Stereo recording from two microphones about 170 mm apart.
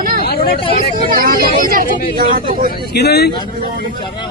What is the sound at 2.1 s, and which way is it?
Speech, 55° right (ahead or behind).